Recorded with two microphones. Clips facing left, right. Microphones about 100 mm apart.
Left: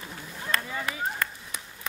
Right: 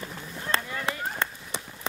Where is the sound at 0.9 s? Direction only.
25° right (ahead or behind).